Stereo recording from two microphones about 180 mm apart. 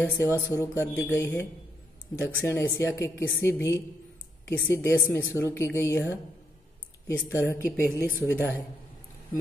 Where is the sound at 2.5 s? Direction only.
10° left (ahead or behind).